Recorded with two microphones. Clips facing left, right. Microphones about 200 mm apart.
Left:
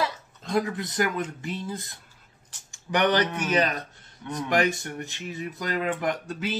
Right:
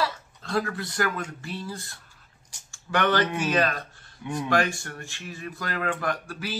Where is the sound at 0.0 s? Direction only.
20° left (ahead or behind).